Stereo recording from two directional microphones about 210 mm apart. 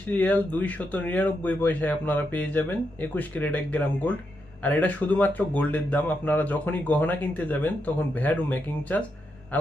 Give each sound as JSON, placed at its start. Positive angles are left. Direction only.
{"t": 0.1, "sound": "speech", "side_deg": 5}